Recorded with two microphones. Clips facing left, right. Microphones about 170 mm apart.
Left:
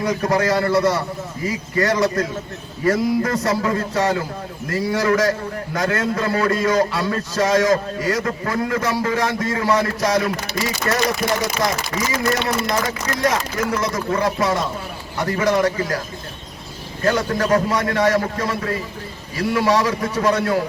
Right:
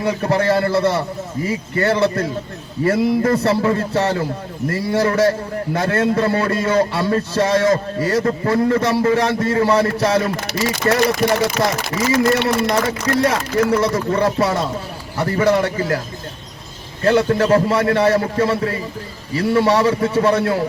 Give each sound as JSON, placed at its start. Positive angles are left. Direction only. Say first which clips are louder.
{"t": 0.0, "sound": "a man's voice", "louder": "right 1 dB", "side_deg": -30}
{"t": 11.6, "sound": "speech", "louder": "right 3 dB", "side_deg": -65}
{"t": 13.2, "sound": "speech", "louder": "right 1 dB", "side_deg": -30}
{"t": 17.0, "sound": "a man's voice", "louder": "right 5 dB", "side_deg": -30}